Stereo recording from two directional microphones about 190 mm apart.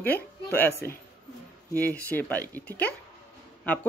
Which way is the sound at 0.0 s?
10° left (ahead or behind).